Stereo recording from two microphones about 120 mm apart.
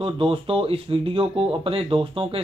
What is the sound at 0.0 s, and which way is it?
Speech, 50° right (ahead or behind).